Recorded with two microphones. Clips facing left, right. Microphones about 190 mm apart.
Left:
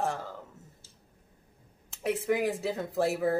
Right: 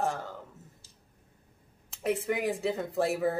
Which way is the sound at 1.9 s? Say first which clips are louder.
Left 1 dB; centre (ahead or behind).